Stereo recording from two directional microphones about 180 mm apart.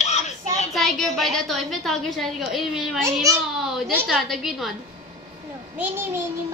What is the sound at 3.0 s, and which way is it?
Speech, 15° right (ahead or behind).